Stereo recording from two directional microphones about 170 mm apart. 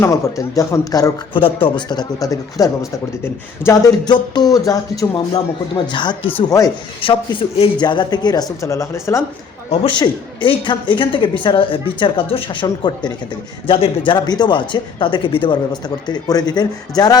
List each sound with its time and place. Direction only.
0.0 s speech: 20° left (ahead or behind)
5.1 s speech: 30° left (ahead or behind)
7.0 s speech: 30° left (ahead or behind)
9.6 s speech: 30° left (ahead or behind)